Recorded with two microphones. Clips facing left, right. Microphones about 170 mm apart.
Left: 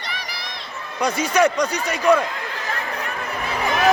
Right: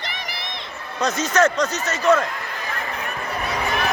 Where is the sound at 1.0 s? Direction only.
10° left (ahead or behind).